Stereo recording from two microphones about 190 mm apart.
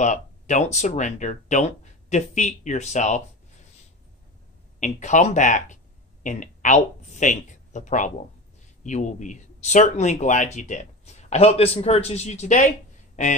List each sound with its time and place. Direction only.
0.0 s speech: 40° left (ahead or behind)
4.7 s speech: 40° left (ahead or behind)